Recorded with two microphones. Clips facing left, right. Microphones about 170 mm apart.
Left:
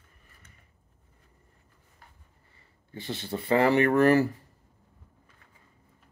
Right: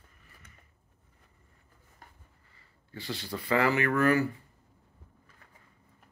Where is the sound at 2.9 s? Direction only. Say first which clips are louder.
Left 3 dB; 20° left (ahead or behind); by 4.3 s 35° left (ahead or behind).